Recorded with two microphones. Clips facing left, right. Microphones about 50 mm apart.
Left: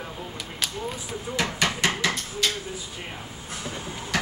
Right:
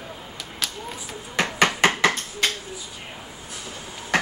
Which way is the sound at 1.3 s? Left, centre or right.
Right.